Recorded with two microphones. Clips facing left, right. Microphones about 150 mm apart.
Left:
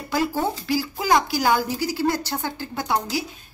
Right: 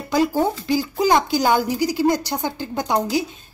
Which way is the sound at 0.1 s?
20° right (ahead or behind).